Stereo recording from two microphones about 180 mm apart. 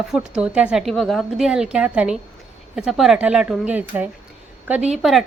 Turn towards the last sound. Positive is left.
turn(degrees=0)  # may be behind; listen again after turning